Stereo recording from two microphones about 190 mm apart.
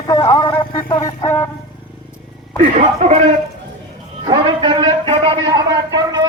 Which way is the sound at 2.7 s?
40° right (ahead or behind).